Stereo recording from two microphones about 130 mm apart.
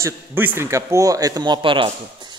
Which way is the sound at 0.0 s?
15° right (ahead or behind).